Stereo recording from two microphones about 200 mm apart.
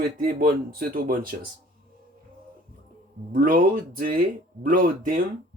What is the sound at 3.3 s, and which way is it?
Speech, 45° right (ahead or behind).